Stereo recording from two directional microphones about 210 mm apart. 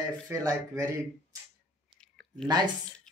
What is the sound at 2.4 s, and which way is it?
Speech, 20° right (ahead or behind).